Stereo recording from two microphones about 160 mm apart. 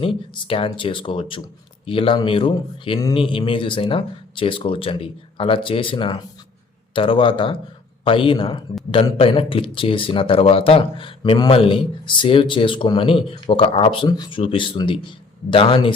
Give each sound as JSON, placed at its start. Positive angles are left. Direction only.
{"t": 0.4, "sound": "speech", "side_deg": 35}